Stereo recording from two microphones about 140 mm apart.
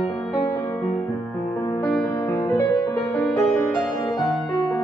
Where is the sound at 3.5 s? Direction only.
10° left (ahead or behind).